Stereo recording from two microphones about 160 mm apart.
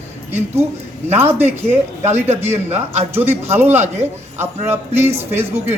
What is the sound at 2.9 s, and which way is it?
Speech, 40° right (ahead or behind).